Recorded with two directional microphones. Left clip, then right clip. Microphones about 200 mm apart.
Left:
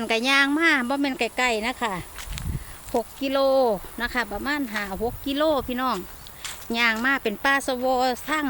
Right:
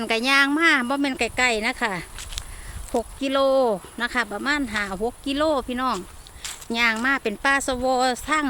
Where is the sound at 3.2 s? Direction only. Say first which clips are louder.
Right 1 dB; 15° right (ahead or behind).